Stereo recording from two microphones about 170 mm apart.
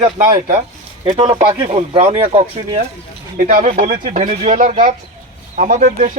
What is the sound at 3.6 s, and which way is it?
Speech, 40° right (ahead or behind).